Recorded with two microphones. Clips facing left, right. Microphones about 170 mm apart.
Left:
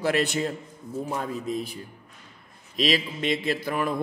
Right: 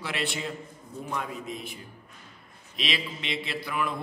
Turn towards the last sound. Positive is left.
turn(degrees=45)  # may be behind; listen again after turning